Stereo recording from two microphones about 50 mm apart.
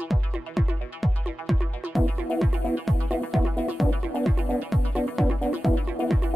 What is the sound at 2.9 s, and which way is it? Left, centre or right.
Music, centre.